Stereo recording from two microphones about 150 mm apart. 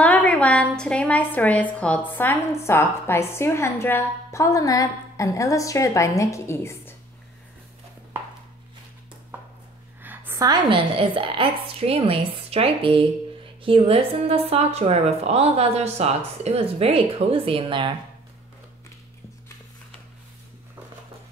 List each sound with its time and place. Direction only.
0.0 s a woman's voice: 10° left (ahead or behind)
10.0 s a sound: 10° right (ahead or behind)
10.4 s a woman's voice: 30° right (ahead or behind)